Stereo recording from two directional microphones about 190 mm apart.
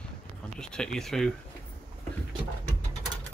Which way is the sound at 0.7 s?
5° left (ahead or behind).